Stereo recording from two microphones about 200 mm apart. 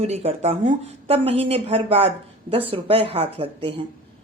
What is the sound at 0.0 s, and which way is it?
A woman's voice, 30° right (ahead or behind).